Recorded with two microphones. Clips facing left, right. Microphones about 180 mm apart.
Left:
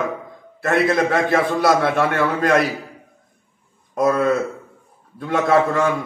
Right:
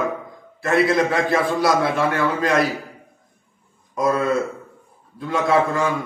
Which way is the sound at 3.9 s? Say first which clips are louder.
Left 2 dB; 50° left (ahead or behind).